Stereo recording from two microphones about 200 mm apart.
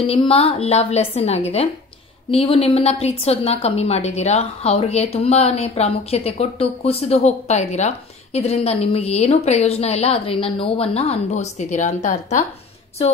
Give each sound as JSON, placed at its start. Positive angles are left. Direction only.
{"t": 0.0, "sound": "a woman's voice", "side_deg": 25}